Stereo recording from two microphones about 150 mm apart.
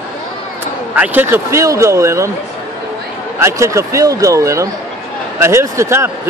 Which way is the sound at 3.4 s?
20° right (ahead or behind).